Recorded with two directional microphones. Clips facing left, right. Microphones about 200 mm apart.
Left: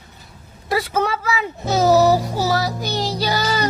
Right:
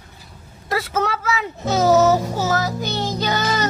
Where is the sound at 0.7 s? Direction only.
10° left (ahead or behind).